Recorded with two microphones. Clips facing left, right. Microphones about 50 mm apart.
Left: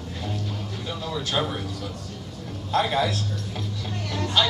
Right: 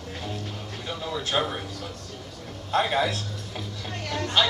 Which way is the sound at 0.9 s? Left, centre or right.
Centre.